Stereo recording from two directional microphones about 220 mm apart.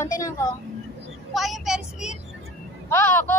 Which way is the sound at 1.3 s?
Centre (ahead or behind).